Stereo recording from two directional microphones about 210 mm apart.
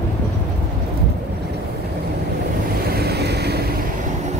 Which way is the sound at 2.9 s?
50° right (ahead or behind).